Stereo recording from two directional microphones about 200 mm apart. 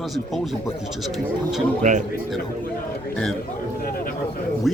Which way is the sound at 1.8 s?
35° right (ahead or behind).